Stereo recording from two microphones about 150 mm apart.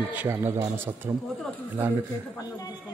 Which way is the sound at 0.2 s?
15° right (ahead or behind).